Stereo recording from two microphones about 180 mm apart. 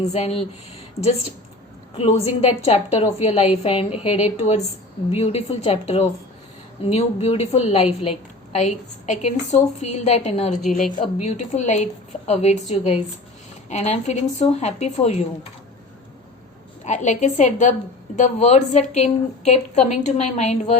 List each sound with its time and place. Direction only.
0.0 s a woman's voice: 35° left (ahead or behind)
2.0 s a woman's voice: 35° left (ahead or behind)
16.8 s a woman's voice: 40° left (ahead or behind)